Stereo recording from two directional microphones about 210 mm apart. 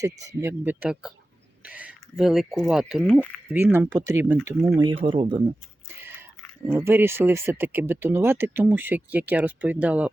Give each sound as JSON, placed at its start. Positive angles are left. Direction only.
{"t": 0.0, "sound": "speech", "side_deg": -15}
{"t": 4.7, "sound": "speech", "side_deg": -20}
{"t": 5.9, "sound": "whispering", "side_deg": -10}
{"t": 6.7, "sound": "speech", "side_deg": -10}